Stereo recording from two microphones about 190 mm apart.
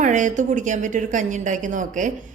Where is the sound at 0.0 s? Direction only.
40° right (ahead or behind).